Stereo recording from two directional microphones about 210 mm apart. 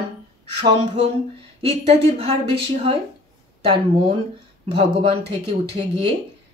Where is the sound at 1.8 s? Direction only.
30° right (ahead or behind).